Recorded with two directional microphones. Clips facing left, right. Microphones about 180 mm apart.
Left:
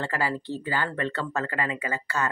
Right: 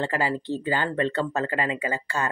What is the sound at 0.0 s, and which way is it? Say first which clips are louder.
Speech: right 3 dB; 20° right (ahead or behind).